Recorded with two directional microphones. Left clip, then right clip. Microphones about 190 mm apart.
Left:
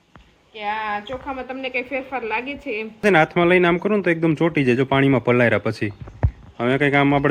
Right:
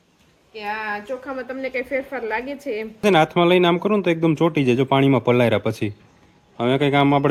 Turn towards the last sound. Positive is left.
turn(degrees=-15)  # may be behind; listen again after turning